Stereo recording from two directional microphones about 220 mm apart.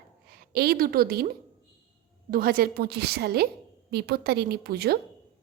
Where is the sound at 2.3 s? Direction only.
40° right (ahead or behind).